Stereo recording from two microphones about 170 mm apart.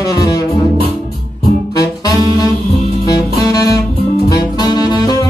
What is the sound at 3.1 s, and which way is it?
Music, 20° left (ahead or behind).